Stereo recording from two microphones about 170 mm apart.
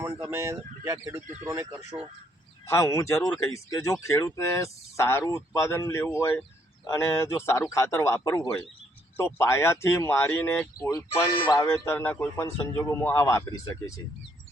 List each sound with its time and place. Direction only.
0.2 s speech: 15° right (ahead or behind)
2.6 s a man's voice: 15° left (ahead or behind)